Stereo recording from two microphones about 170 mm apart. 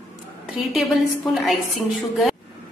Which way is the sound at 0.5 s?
Centre (ahead or behind).